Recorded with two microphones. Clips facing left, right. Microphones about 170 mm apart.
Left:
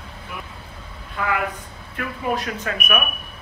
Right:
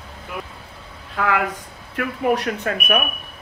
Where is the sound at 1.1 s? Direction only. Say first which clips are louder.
Right 3 dB; 75° right (ahead or behind).